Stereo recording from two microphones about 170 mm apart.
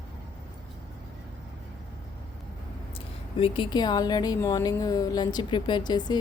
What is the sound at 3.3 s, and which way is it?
A woman's voice, 35° left (ahead or behind).